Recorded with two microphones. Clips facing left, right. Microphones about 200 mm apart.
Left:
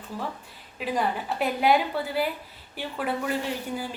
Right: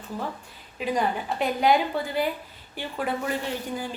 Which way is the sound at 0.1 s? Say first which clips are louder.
Right 1 dB; 15° right (ahead or behind).